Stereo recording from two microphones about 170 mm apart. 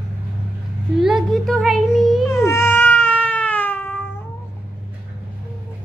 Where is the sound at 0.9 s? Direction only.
Centre (ahead or behind).